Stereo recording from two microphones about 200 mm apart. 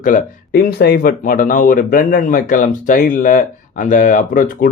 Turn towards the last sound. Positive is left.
turn(degrees=45)  # may be behind; listen again after turning